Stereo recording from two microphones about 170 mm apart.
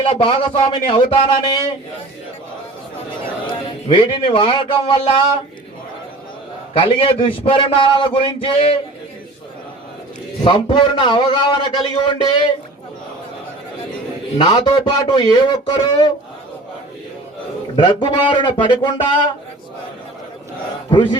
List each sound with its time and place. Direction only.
0.0 s a man's voice: 30° left (ahead or behind)
3.4 s a man's voice: 30° left (ahead or behind)
6.7 s a man's voice: 30° left (ahead or behind)
10.4 s speech: 25° left (ahead or behind)
14.3 s speech: 25° left (ahead or behind)
17.7 s speech: 30° left (ahead or behind)
20.9 s speech: 30° left (ahead or behind)